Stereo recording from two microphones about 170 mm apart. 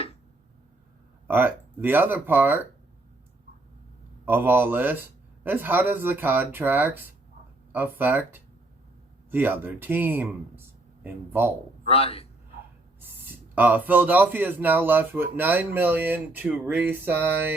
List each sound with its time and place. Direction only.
1.3 s speech: 10° right (ahead or behind)
4.3 s speech: 10° right (ahead or behind)
11.9 s a man's voice: 35° left (ahead or behind)
13.0 s speech: 10° right (ahead or behind)